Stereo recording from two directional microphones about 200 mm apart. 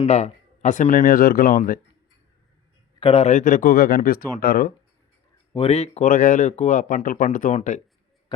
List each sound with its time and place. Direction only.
0.0 s speech: 35° left (ahead or behind)
3.0 s speech: 30° left (ahead or behind); by 4.7 s 45° left (ahead or behind)
5.5 s speech: 30° left (ahead or behind)